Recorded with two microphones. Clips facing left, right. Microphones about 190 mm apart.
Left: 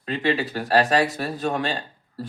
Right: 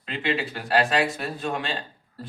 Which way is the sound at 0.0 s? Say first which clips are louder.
Left 4 dB; 40° left (ahead or behind).